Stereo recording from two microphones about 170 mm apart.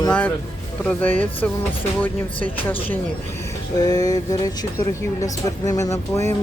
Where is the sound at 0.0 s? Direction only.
10° left (ahead or behind).